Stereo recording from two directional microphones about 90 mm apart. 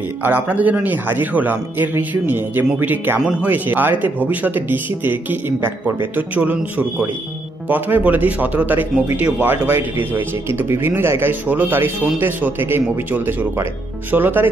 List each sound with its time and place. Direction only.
0.2 s speech: 20° right (ahead or behind)